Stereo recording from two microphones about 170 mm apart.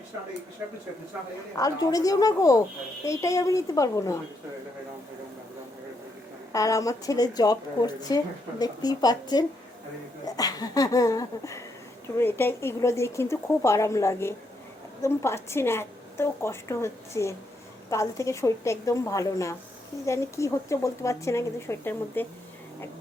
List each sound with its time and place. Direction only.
1.5 s speech: 20° left (ahead or behind)
6.5 s a woman's voice: 20° left (ahead or behind)